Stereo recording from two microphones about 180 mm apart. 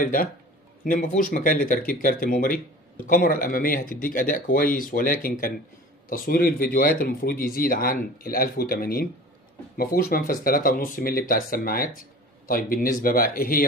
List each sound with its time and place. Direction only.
0.0 s speech: 50° left (ahead or behind)